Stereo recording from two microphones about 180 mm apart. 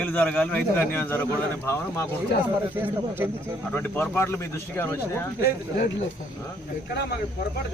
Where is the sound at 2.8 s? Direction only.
10° right (ahead or behind).